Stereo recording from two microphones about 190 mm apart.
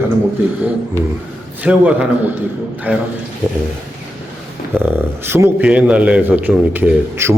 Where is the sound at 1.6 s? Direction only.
5° right (ahead or behind).